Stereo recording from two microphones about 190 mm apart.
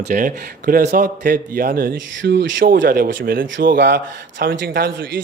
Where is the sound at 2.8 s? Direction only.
50° right (ahead or behind).